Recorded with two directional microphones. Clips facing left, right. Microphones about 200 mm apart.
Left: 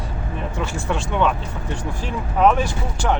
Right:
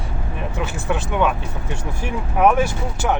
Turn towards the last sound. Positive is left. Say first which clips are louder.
# right 1 dB
turn(degrees=-10)  # may be behind; listen again after turning